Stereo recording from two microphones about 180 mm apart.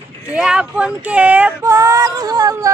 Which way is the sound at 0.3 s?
Centre (ahead or behind).